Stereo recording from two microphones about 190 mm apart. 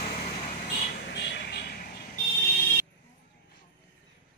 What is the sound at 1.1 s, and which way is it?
Vehicle, 60° left (ahead or behind).